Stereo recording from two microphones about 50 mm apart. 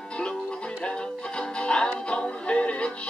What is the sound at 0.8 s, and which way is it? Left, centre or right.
Music, centre.